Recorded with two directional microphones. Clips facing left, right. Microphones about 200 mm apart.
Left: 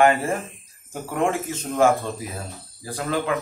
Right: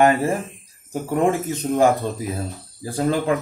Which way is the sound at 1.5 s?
20° right (ahead or behind).